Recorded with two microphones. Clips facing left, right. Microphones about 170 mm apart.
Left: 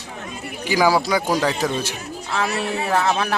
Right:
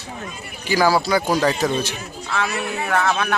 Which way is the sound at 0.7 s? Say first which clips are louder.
Even; 15° left (ahead or behind).